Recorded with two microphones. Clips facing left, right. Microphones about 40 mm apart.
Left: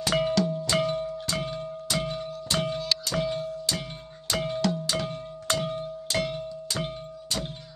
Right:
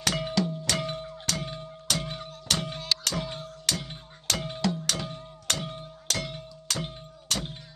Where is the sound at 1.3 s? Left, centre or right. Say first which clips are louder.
Even; right.